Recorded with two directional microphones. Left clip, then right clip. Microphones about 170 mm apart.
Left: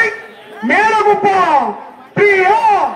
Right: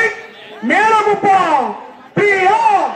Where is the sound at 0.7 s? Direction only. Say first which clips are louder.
Left 1 dB; 35° right (ahead or behind).